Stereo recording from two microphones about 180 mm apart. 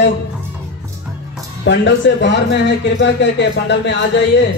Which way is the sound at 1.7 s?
80° left.